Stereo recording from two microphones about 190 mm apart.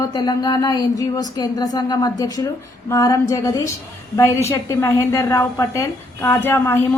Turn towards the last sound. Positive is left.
turn(degrees=10)  # may be behind; listen again after turning